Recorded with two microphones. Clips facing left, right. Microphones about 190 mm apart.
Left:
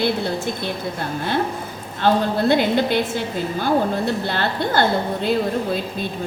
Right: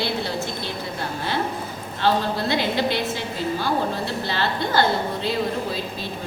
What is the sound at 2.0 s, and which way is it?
A woman's voice, 50° left (ahead or behind).